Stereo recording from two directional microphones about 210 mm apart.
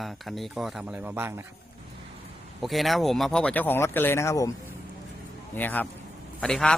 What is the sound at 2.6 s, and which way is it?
Speech, centre (ahead or behind).